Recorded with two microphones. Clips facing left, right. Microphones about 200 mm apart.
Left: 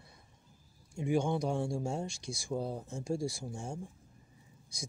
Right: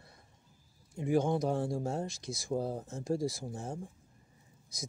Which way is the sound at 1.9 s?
Centre (ahead or behind).